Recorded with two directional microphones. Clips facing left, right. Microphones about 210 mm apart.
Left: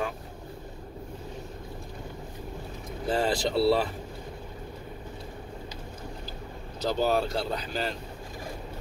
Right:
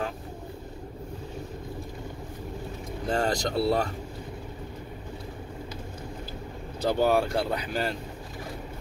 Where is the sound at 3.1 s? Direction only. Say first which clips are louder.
Even; 5° left (ahead or behind).